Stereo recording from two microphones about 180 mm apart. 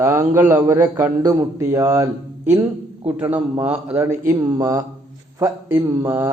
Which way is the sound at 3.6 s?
10° right (ahead or behind).